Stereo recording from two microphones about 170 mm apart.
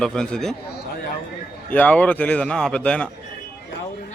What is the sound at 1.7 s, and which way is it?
A man's voice, 10° left (ahead or behind).